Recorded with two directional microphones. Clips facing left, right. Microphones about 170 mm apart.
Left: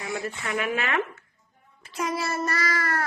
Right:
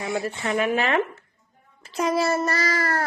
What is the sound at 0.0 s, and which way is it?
A child's voice, 30° right (ahead or behind).